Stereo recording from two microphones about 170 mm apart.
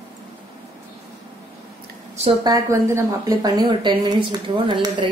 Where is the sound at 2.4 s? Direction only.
20° right (ahead or behind).